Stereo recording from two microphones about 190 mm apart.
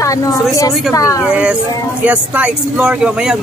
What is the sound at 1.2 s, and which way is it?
Speech, 5° right (ahead or behind).